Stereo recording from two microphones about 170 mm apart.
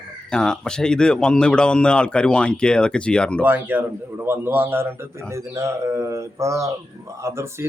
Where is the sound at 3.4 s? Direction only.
10° right (ahead or behind).